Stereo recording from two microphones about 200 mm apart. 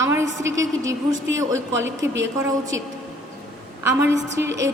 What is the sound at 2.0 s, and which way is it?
Speech, 65° right (ahead or behind).